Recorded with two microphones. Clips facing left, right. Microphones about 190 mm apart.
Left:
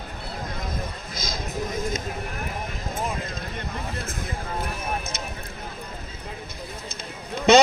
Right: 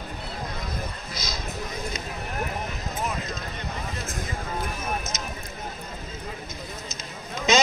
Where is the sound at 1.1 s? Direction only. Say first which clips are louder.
Left 3 dB; 50° left (ahead or behind).